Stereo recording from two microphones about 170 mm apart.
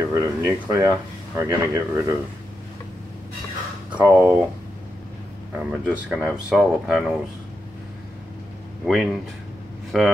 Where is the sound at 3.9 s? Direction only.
10° right (ahead or behind).